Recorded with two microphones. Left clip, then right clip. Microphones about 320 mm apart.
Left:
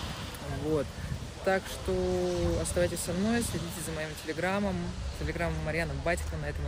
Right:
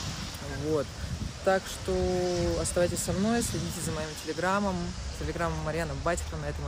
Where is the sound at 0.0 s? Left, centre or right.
Left.